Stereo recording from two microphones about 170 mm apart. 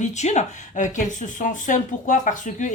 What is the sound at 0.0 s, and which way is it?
Speech, 45° left (ahead or behind).